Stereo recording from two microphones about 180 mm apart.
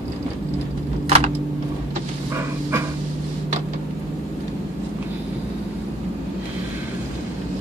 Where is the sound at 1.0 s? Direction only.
30° right (ahead or behind).